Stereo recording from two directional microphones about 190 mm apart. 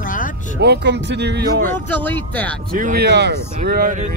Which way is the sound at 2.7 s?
45° right (ahead or behind).